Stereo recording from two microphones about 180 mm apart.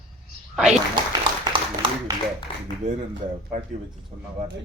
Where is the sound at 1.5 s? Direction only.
25° right (ahead or behind).